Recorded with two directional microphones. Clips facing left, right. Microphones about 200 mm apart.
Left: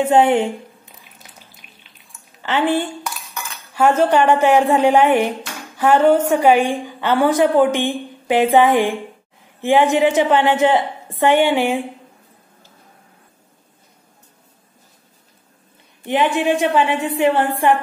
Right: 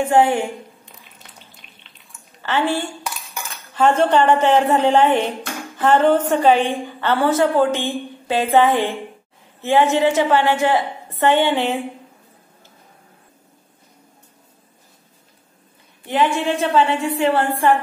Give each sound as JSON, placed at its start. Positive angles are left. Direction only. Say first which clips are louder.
{"t": 0.1, "sound": "a woman's voice", "louder": "left 2 dB", "side_deg": 20}
{"t": 0.8, "sound": "a sound", "louder": "even", "side_deg": 5}
{"t": 2.4, "sound": "a woman's voice", "louder": "left 2 dB", "side_deg": 20}
{"t": 16.3, "sound": "a woman's voice", "louder": "left 2 dB", "side_deg": 15}